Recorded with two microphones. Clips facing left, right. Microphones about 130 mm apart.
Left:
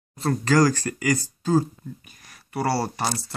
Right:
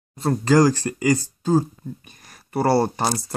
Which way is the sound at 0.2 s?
20° right (ahead or behind).